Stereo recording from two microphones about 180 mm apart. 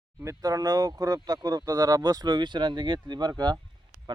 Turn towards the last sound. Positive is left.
turn(degrees=-25)  # may be behind; listen again after turning